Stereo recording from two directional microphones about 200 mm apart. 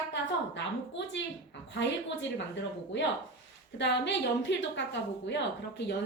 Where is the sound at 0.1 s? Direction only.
65° left (ahead or behind).